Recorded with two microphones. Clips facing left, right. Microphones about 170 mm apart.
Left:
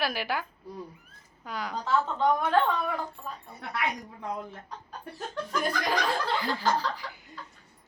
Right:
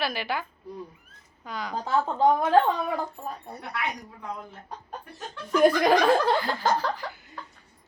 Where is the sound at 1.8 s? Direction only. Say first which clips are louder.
Right 4 dB; 40° right (ahead or behind).